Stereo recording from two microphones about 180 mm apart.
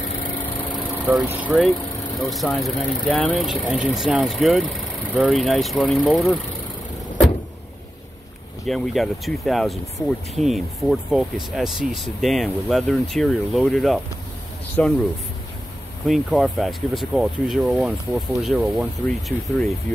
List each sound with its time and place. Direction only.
1.2 s speech: 10° right (ahead or behind)
8.6 s speech: centre (ahead or behind)
16.1 s speech: centre (ahead or behind)